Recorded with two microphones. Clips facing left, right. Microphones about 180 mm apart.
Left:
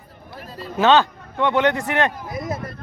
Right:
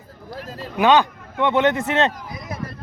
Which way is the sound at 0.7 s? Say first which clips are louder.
Even; 15° right (ahead or behind).